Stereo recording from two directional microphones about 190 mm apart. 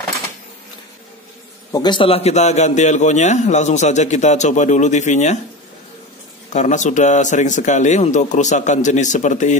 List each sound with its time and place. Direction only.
1.7 s a man's voice: 20° left (ahead or behind); by 5.4 s 40° left (ahead or behind)
6.5 s a man's voice: 40° left (ahead or behind)